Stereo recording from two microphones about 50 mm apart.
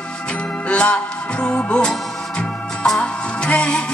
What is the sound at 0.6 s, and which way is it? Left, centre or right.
Music, left.